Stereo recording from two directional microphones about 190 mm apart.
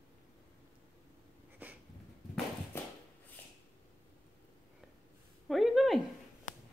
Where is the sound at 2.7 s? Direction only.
10° left (ahead or behind).